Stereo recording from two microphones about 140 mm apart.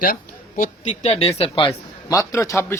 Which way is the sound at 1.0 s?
45° left (ahead or behind).